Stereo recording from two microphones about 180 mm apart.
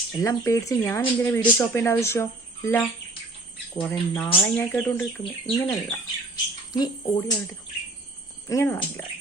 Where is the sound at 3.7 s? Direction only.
10° left (ahead or behind).